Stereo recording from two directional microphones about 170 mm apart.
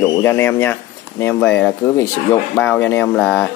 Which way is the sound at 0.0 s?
15° left (ahead or behind).